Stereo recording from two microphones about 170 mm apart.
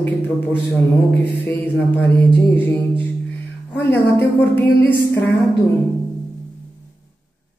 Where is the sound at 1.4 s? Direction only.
10° left (ahead or behind).